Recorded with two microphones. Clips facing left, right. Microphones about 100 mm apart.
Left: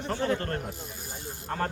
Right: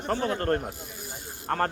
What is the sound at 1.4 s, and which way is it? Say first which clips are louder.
Speech: right 4 dB; 55° right (ahead or behind).